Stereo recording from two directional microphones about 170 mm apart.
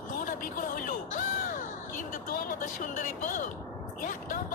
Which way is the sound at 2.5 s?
50° left (ahead or behind).